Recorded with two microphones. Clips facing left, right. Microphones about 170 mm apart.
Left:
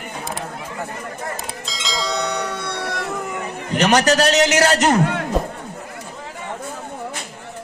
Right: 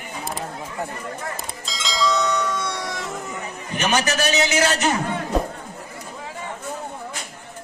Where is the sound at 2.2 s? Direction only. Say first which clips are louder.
Right 1 dB; 65° left (ahead or behind).